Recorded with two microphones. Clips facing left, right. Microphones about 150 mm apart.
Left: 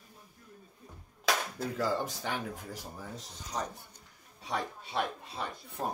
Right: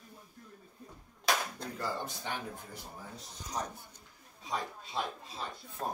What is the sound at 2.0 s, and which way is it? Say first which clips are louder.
Speech: left 3 dB; 90° left.